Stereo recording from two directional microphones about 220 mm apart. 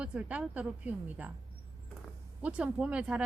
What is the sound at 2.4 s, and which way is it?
Speech, 5° right (ahead or behind).